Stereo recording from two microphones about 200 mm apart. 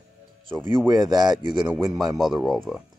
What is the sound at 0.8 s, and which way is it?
Speech, 20° right (ahead or behind).